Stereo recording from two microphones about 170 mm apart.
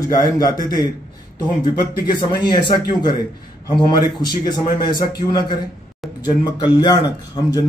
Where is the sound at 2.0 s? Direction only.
25° left (ahead or behind).